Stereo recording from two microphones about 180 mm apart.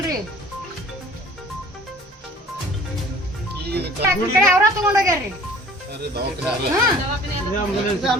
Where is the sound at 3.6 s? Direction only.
65° right (ahead or behind).